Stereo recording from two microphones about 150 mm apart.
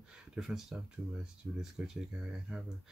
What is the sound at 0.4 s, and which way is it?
Speech, 5° right (ahead or behind).